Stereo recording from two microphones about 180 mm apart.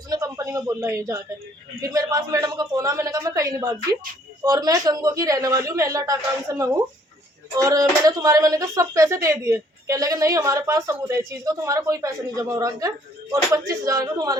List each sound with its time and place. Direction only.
0.1 s a man's voice: 20° right (ahead or behind)